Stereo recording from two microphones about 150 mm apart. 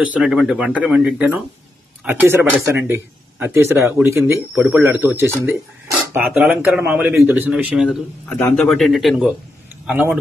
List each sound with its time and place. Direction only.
0.1 s a man's voice: 5° right (ahead or behind)
8.3 s a man's voice: 10° left (ahead or behind); by 10.1 s 10° right (ahead or behind)